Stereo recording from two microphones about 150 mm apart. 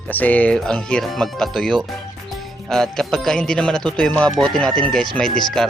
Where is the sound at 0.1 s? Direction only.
10° left (ahead or behind).